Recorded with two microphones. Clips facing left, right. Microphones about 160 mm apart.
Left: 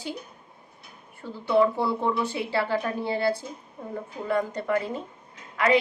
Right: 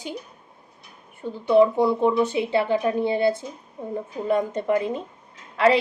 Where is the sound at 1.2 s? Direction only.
20° right (ahead or behind).